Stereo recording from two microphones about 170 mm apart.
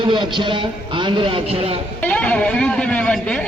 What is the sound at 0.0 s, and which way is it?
A man's voice, 30° right (ahead or behind).